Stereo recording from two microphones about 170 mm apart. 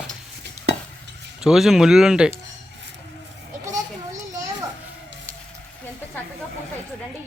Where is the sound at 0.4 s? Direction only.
90° right.